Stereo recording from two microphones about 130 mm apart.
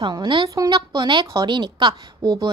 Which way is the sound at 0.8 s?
35° right (ahead or behind).